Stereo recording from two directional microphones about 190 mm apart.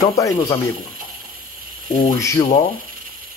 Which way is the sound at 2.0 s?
15° left (ahead or behind).